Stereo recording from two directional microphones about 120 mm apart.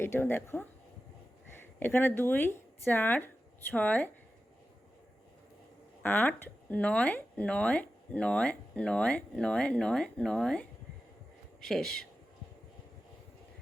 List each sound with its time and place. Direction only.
0.0 s speech: 20° left (ahead or behind)
1.8 s speech: 20° left (ahead or behind)
6.0 s speech: 15° left (ahead or behind)